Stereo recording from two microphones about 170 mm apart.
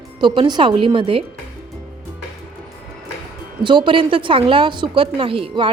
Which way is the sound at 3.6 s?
30° right (ahead or behind).